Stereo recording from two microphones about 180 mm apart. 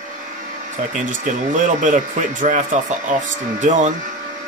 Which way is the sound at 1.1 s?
45° right (ahead or behind).